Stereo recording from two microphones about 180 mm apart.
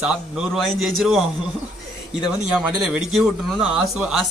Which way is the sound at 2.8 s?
Centre (ahead or behind).